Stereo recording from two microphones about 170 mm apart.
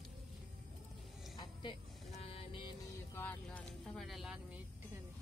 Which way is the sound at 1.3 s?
25° left (ahead or behind).